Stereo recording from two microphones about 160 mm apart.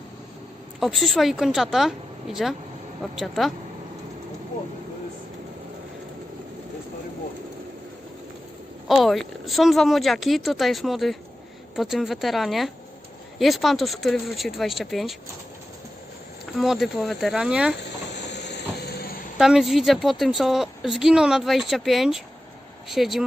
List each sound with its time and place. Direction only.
0.8 s a woman's voice: centre (ahead or behind)
8.9 s a woman's voice: centre (ahead or behind)
16.6 s a woman's voice: centre (ahead or behind)
17.7 s steam: 90° left
19.4 s a woman's voice: centre (ahead or behind)